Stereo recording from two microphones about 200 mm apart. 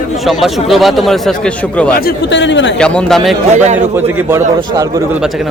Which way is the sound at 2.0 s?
55° left (ahead or behind).